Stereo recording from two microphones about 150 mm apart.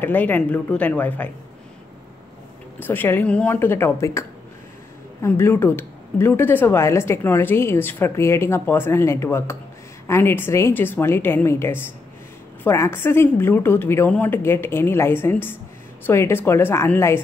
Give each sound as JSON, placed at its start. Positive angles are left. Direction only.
{"t": 0.0, "sound": "speech", "side_deg": 10}
{"t": 2.8, "sound": "speech", "side_deg": 15}